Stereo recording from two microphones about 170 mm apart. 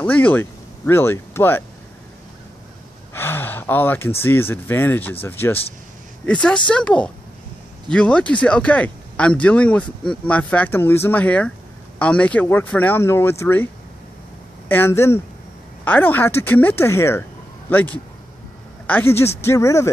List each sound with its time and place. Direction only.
0.0 s speech: 10° left (ahead or behind)
3.1 s gasp: 15° left (ahead or behind)
4.2 s a woman's voice: 15° left (ahead or behind)
14.7 s speech: 15° left (ahead or behind)